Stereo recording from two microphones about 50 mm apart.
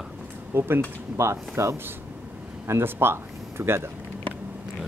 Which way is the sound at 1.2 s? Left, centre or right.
Right.